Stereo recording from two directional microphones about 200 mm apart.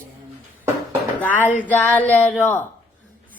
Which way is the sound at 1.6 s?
10° left (ahead or behind).